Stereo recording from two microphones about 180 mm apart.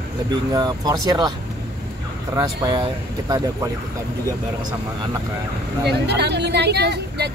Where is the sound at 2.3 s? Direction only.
20° right (ahead or behind).